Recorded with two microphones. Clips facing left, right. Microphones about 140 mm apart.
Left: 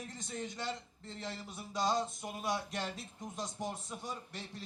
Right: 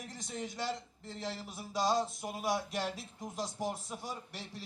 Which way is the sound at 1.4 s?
5° right (ahead or behind).